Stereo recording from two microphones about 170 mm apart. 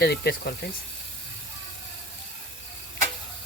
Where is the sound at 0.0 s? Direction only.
70° left (ahead or behind).